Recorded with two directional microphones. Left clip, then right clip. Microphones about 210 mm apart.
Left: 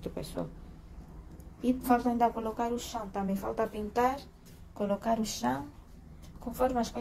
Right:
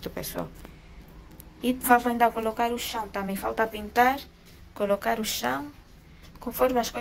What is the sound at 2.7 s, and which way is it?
Speech, 10° right (ahead or behind).